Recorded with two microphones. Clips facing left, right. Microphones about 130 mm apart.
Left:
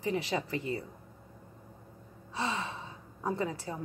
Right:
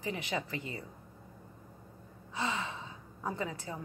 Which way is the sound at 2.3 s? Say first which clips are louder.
Left 1 dB; 25° left (ahead or behind).